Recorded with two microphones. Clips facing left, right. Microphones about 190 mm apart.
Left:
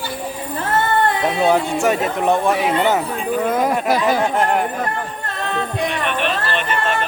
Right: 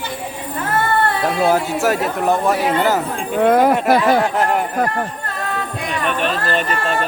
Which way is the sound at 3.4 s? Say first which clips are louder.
Right 8 dB; 65° right (ahead or behind).